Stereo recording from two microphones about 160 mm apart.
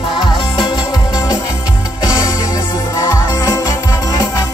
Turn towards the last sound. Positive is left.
turn(degrees=20)  # may be behind; listen again after turning